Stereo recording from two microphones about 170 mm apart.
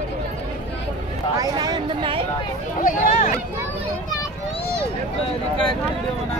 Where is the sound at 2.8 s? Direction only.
50° left (ahead or behind).